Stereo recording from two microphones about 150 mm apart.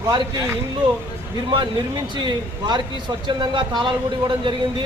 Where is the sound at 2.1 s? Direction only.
30° right (ahead or behind).